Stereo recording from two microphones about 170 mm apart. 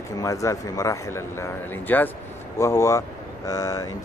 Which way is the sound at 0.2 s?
20° left (ahead or behind).